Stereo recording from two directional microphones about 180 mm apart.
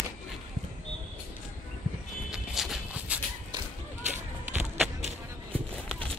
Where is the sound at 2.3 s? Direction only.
5° right (ahead or behind).